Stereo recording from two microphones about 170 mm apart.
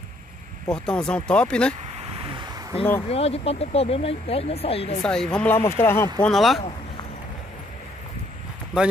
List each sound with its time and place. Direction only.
0.7 s speech: 5° left (ahead or behind)
1.9 s a sound: 35° right (ahead or behind)
3.1 s speech: 35° left (ahead or behind)
5.0 s speech: 5° left (ahead or behind)
6.2 s speech: centre (ahead or behind)